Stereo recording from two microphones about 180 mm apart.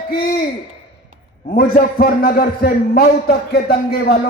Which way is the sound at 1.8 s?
60° left (ahead or behind).